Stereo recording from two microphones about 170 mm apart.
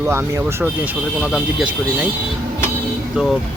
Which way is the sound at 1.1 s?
5° right (ahead or behind).